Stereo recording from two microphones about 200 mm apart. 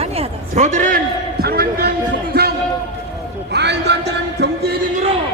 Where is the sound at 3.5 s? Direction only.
55° right (ahead or behind).